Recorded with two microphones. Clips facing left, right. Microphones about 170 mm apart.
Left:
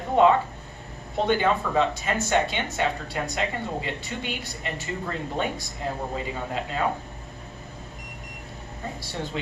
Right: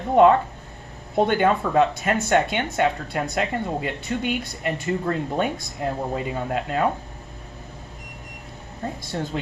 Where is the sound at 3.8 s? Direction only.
55° right (ahead or behind).